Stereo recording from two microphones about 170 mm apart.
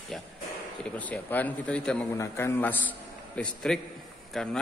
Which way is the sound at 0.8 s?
10° left (ahead or behind).